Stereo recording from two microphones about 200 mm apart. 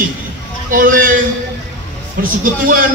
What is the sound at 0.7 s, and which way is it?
Speech, 45° right (ahead or behind).